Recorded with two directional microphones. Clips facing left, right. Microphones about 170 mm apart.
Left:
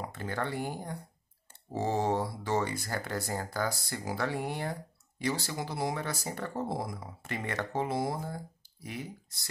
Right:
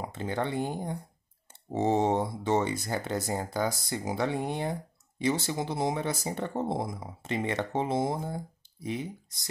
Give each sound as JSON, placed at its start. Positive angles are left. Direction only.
{"t": 0.0, "sound": "speech", "side_deg": -20}